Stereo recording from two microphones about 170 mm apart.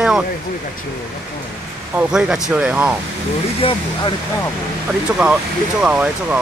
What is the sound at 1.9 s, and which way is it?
Speech, 5° right (ahead or behind).